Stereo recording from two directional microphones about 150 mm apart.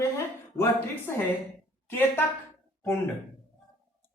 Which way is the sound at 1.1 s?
15° left (ahead or behind).